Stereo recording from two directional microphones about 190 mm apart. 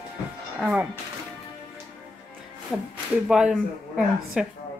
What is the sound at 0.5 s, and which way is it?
Speech, 5° right (ahead or behind).